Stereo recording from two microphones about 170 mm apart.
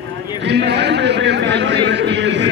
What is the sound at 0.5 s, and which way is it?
Speech, 90° right.